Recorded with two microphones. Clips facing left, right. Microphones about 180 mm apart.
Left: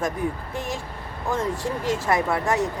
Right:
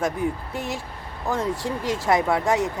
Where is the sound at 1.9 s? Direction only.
15° right (ahead or behind).